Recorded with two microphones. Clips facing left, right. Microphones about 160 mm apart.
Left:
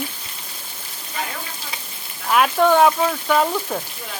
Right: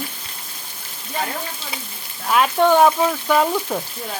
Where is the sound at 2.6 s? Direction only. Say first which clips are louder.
Right 1 dB; 20° right (ahead or behind).